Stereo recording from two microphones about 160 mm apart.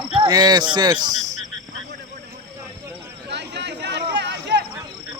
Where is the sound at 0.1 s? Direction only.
30° right (ahead or behind).